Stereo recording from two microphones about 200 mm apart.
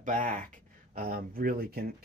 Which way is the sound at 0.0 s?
40° right (ahead or behind).